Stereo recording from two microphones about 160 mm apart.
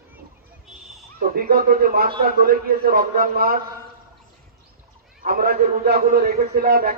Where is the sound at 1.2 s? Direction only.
65° right (ahead or behind).